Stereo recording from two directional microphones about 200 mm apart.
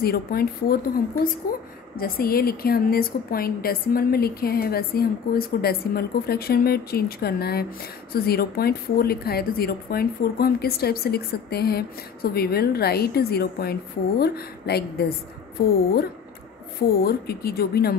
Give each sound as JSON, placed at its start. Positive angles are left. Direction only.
{"t": 0.0, "sound": "speech", "side_deg": 50}